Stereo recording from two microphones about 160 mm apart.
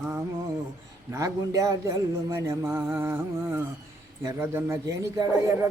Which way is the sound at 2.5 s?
15° right (ahead or behind).